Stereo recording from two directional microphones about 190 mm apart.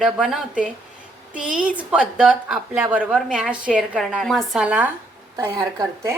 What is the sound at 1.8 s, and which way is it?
A woman's voice, 5° right (ahead or behind).